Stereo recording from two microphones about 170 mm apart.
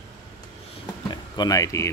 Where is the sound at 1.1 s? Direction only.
20° left (ahead or behind).